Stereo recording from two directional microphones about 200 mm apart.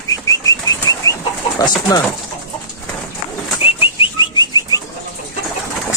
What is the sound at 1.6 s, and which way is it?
Speech, 20° left (ahead or behind).